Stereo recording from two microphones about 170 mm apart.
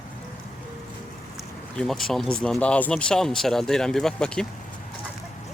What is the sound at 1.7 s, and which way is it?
Speech, 5° left (ahead or behind).